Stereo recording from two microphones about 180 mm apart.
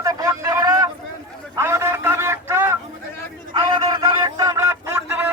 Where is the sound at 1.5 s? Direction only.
15° right (ahead or behind).